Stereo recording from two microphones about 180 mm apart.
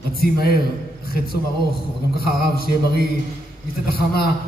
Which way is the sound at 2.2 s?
60° left (ahead or behind).